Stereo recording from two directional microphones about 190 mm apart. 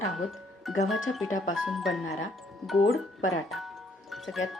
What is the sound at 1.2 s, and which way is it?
Speech, 90° left.